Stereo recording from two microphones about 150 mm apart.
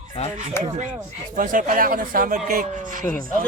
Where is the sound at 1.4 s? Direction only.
65° right (ahead or behind).